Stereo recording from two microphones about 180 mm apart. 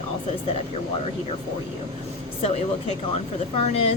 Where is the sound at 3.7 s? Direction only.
35° left (ahead or behind).